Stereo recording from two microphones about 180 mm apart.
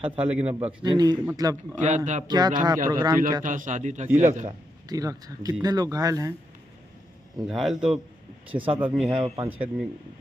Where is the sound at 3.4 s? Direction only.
45° right (ahead or behind).